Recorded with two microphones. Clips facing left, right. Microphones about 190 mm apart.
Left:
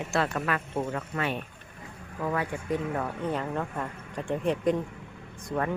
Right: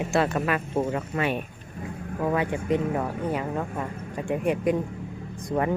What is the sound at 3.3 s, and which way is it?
Speech, 10° right (ahead or behind).